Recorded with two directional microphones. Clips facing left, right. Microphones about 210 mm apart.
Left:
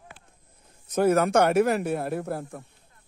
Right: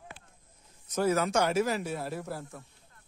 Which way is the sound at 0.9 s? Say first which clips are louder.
Left 6 dB; 55° left (ahead or behind).